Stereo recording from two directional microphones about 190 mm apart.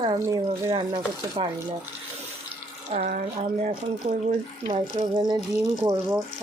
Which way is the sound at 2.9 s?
40° right (ahead or behind).